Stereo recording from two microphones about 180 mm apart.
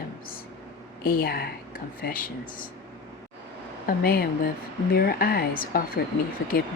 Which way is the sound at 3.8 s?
55° left (ahead or behind).